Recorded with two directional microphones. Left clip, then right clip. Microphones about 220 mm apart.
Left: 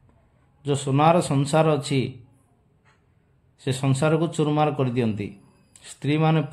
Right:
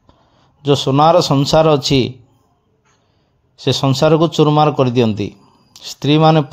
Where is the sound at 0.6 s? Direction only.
30° right (ahead or behind).